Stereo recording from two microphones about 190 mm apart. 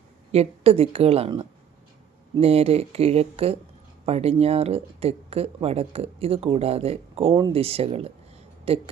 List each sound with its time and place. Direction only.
0.3 s speech: 35° right (ahead or behind)